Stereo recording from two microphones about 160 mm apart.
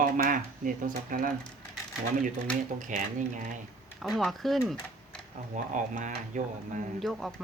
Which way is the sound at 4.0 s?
Centre (ahead or behind).